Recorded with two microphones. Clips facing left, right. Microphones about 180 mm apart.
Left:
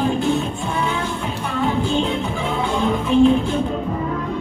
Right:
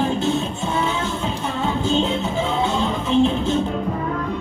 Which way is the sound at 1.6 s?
20° right (ahead or behind).